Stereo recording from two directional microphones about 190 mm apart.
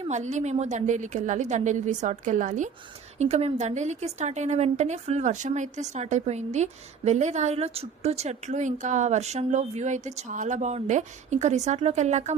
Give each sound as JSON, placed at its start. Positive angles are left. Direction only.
{"t": 0.0, "sound": "a woman's voice", "side_deg": -35}